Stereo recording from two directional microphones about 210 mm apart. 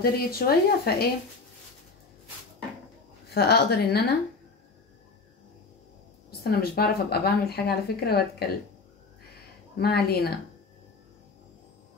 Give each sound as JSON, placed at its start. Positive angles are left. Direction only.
{"t": 0.0, "sound": "speech", "side_deg": 45}
{"t": 3.3, "sound": "speech", "side_deg": 50}
{"t": 6.4, "sound": "speech", "side_deg": 45}
{"t": 9.8, "sound": "speech", "side_deg": 50}